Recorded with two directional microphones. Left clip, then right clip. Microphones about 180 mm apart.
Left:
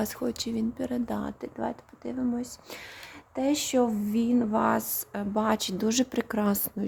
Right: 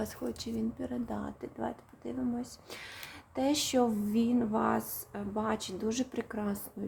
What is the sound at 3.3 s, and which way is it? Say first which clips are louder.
Speech: left 3 dB; 25° left (ahead or behind).